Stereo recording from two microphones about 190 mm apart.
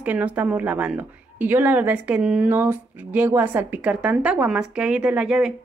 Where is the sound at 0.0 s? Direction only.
10° right (ahead or behind).